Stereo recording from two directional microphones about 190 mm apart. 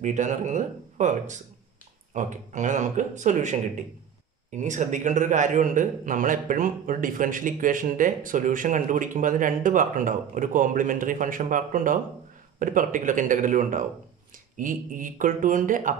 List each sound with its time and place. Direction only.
0.0 s a man's voice: 40° right (ahead or behind)